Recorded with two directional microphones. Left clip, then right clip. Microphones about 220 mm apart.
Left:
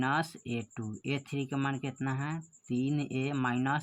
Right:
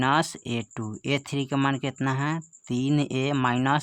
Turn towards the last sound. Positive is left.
turn(degrees=-40)  # may be behind; listen again after turning